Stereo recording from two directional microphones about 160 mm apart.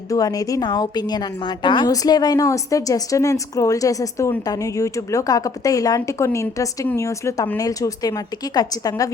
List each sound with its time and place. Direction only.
0.1 s a woman's voice: 20° left (ahead or behind)